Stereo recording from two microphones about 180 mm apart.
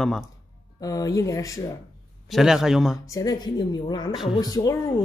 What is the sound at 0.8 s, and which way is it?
Speech, 20° left (ahead or behind).